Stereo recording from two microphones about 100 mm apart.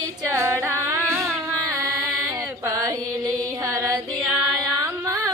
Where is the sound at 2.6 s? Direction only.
35° right (ahead or behind).